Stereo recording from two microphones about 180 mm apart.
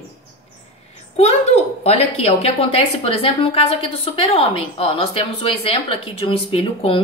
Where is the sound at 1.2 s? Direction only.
35° left (ahead or behind).